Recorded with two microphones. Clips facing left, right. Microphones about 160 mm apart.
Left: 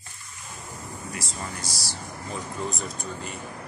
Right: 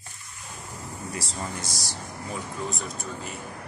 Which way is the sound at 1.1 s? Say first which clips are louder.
Right 3 dB; 30° right (ahead or behind).